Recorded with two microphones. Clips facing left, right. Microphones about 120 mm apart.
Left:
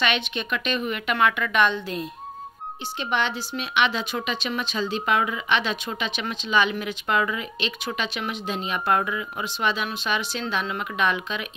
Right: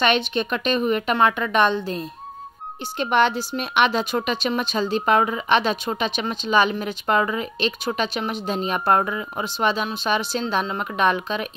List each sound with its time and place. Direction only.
0.0 s speech: 40° right (ahead or behind)
3.0 s speech: 50° right (ahead or behind)